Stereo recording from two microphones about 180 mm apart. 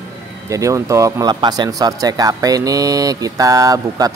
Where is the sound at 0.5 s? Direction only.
15° right (ahead or behind).